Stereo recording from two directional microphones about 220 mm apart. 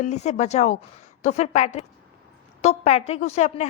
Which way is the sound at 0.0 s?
30° left (ahead or behind).